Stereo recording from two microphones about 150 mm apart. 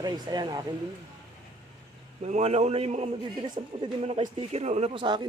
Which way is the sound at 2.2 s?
45° right (ahead or behind).